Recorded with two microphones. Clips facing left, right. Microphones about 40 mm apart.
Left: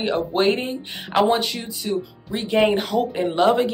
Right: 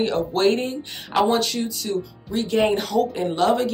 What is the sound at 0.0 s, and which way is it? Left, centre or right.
Speech, centre.